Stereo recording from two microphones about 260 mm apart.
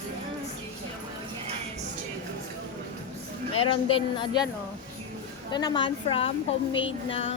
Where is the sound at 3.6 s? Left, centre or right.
Centre.